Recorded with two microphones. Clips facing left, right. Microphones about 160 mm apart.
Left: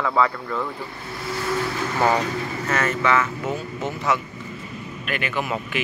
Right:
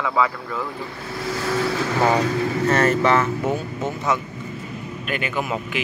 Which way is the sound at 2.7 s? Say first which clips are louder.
Right 3 dB; 35° right (ahead or behind).